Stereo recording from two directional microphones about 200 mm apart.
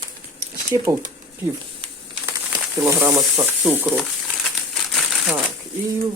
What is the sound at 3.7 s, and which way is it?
Frying, 5° right (ahead or behind).